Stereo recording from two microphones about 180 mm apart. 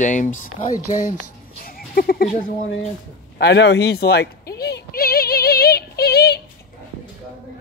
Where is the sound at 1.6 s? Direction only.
55° left (ahead or behind).